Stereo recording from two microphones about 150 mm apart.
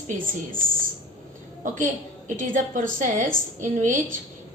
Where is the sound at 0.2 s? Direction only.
65° right (ahead or behind).